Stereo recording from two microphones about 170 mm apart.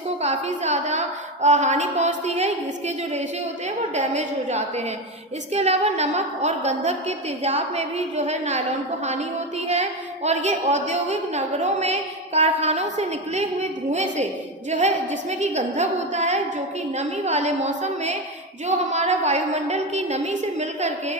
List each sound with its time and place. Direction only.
0.2 s a woman's voice: 40° right (ahead or behind)
10.2 s a woman's voice: 40° right (ahead or behind)